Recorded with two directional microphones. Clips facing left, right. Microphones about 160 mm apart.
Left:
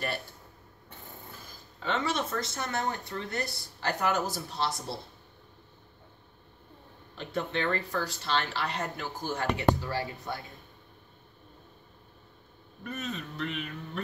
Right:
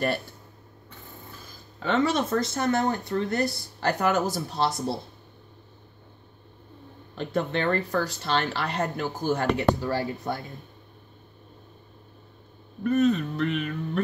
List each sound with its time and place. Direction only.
1.8 s speech: 45° right (ahead or behind)
7.2 s speech: 50° right (ahead or behind)
12.9 s a sound: 50° right (ahead or behind)